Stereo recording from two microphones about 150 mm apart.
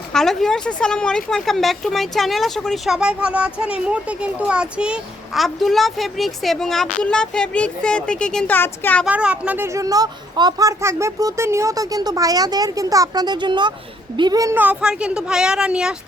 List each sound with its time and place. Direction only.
0.1 s a woman's voice: 5° left (ahead or behind)
9.0 s speech: 10° right (ahead or behind); by 14.5 s 25° right (ahead or behind)
14.5 s a woman's voice: 10° right (ahead or behind)